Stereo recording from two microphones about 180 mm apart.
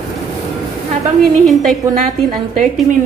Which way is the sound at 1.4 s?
Centre (ahead or behind).